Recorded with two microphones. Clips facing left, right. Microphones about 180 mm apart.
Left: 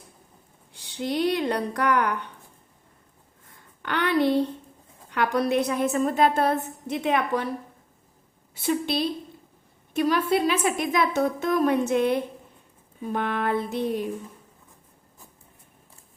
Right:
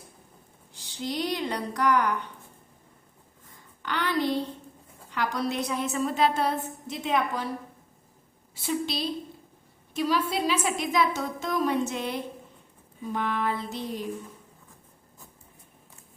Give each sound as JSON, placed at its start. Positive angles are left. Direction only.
{"t": 0.7, "sound": "speech", "side_deg": 60}
{"t": 3.8, "sound": "a sound", "side_deg": 60}
{"t": 5.1, "sound": "a woman's voice", "side_deg": 55}
{"t": 8.5, "sound": "a woman's voice", "side_deg": 60}